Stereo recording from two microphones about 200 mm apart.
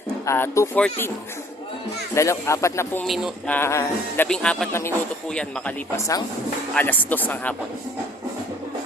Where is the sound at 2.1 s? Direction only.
15° left (ahead or behind).